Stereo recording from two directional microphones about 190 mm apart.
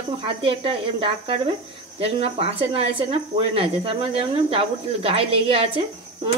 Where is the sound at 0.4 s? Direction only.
25° right (ahead or behind).